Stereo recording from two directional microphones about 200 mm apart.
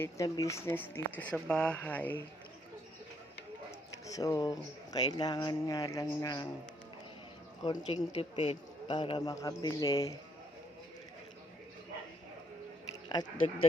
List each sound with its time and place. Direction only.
0.0 s speech: 15° left (ahead or behind)
4.0 s speech: 15° left (ahead or behind)
7.6 s speech: 20° left (ahead or behind)
13.4 s speech: 30° left (ahead or behind)